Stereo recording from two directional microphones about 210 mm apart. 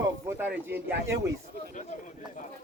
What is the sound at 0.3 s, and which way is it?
Speech, 10° right (ahead or behind).